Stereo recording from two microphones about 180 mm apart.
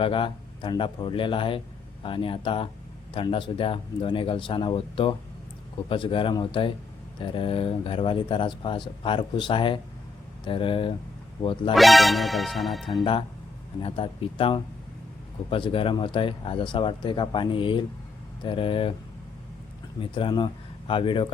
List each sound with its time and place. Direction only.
0.0 s speech: 30° left (ahead or behind)
11.7 s speech: centre (ahead or behind)
13.8 s speech: 30° left (ahead or behind)
20.0 s speech: 30° left (ahead or behind)